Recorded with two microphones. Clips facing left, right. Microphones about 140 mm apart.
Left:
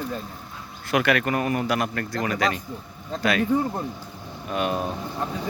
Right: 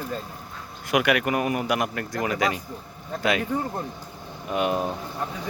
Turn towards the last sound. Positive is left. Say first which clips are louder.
# right 1 dB
turn(degrees=-20)  # may be behind; listen again after turning